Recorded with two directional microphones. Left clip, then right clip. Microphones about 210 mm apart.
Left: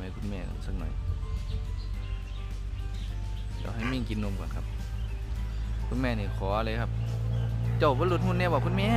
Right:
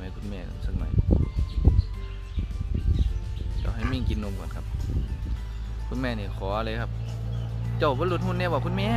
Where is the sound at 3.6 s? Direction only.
Centre (ahead or behind).